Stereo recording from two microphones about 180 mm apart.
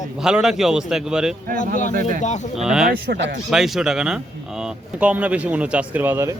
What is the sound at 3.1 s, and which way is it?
Speech, 75° right (ahead or behind).